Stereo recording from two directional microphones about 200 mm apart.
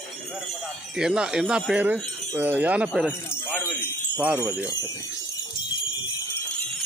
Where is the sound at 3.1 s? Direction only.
10° left (ahead or behind).